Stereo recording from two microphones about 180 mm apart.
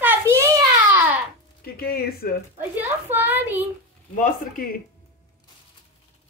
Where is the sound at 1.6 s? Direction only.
55° left (ahead or behind).